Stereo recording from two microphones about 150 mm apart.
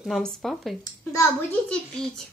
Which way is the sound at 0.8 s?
20° left (ahead or behind).